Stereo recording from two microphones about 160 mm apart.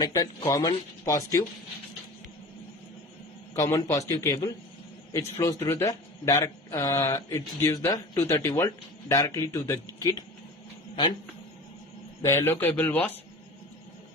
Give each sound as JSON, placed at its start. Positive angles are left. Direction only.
{"t": 0.0, "sound": "a man's voice", "side_deg": 20}
{"t": 3.5, "sound": "a man's voice", "side_deg": 20}
{"t": 12.2, "sound": "speech", "side_deg": 15}